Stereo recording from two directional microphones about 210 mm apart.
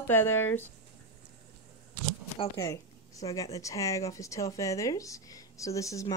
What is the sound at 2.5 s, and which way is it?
Speech, 15° left (ahead or behind).